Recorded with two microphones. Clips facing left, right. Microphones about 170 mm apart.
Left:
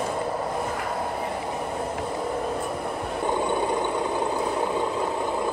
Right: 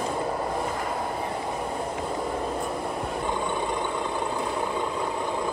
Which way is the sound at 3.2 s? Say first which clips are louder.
Left 6 dB; 20° left (ahead or behind).